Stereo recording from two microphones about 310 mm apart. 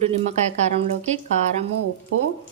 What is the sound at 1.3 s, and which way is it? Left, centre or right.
Speech, right.